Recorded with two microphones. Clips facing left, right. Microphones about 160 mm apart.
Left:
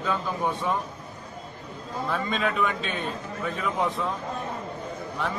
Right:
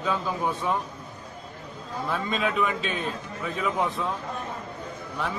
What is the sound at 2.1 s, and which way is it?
A man's voice, centre (ahead or behind).